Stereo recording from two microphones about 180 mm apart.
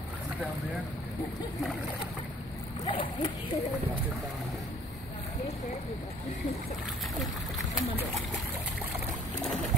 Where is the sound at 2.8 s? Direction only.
25° left (ahead or behind).